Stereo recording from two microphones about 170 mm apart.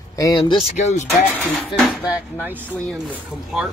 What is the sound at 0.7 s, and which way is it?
Speech, 45° left (ahead or behind).